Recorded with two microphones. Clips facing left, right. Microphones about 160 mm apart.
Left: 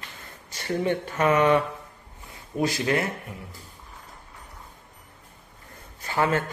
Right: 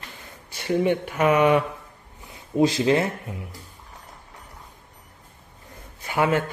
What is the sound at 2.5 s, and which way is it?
Speech, 25° right (ahead or behind).